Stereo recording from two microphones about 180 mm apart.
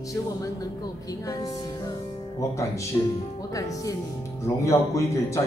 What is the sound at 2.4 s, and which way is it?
Speech, 15° left (ahead or behind).